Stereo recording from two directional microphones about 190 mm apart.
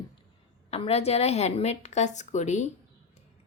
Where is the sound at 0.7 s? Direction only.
35° left (ahead or behind).